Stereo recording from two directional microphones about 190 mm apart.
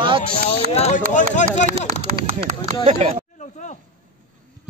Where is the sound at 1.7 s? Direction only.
45° right (ahead or behind).